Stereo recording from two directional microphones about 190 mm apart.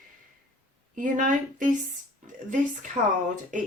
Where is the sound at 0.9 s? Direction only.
45° right (ahead or behind).